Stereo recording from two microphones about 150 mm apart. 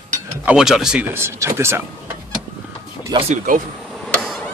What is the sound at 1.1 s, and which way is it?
Speech, 15° right (ahead or behind).